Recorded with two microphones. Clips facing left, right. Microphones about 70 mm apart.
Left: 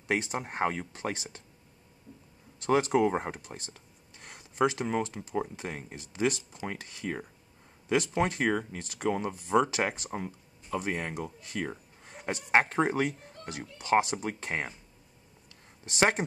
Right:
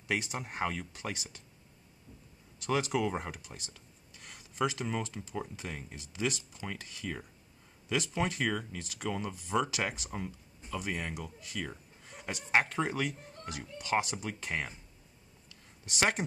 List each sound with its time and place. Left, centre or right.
0.1 s speech: left
2.6 s speech: left
6.5 s speech: left
15.8 s speech: left